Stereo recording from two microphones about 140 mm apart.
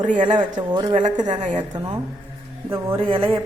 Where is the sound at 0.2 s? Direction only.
35° right (ahead or behind).